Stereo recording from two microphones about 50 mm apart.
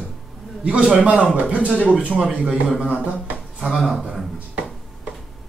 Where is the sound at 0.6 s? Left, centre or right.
Right.